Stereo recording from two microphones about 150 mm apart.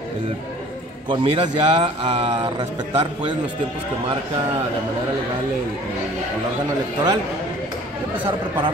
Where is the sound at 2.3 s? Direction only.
30° right (ahead or behind).